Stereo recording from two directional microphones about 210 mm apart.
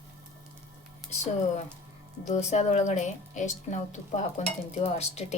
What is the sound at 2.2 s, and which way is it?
A woman's voice, 35° left (ahead or behind).